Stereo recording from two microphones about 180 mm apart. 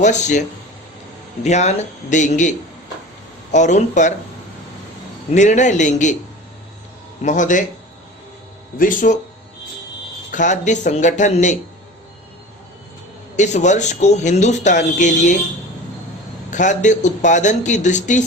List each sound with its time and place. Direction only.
0.0 s speech: 40° left (ahead or behind)
1.5 s a man's voice: 40° left (ahead or behind)
5.3 s speech: 40° left (ahead or behind)
7.2 s a man's voice: 45° left (ahead or behind)
8.8 s a man's voice: 50° left (ahead or behind)
10.3 s a man's voice: 40° left (ahead or behind)
13.3 s speech: 40° left (ahead or behind)
16.5 s a man's voice: 45° left (ahead or behind)